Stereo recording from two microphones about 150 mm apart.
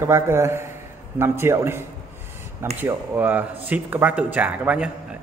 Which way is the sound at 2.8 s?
10° right (ahead or behind).